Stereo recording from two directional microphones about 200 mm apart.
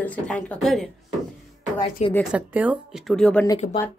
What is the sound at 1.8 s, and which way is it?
Speech, 25° left (ahead or behind).